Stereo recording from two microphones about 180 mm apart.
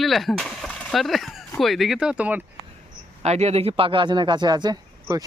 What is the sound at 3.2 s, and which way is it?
Speech, 40° right (ahead or behind).